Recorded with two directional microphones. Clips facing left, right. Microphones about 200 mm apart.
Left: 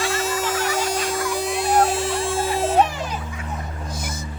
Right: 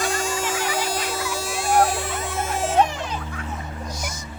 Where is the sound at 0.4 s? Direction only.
10° right (ahead or behind).